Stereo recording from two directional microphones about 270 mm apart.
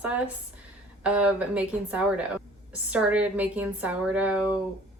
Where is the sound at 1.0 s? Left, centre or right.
Centre.